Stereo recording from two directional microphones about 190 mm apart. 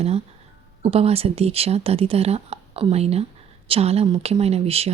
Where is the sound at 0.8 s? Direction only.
30° right (ahead or behind).